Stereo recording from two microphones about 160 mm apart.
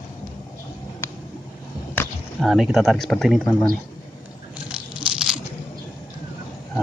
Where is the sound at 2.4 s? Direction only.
Centre (ahead or behind).